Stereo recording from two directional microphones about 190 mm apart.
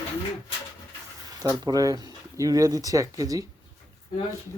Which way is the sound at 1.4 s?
20° right (ahead or behind).